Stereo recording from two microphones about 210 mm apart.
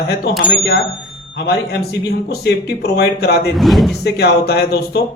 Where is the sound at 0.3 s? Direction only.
50° left (ahead or behind).